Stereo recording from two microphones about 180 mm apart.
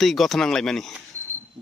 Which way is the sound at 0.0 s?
Centre (ahead or behind).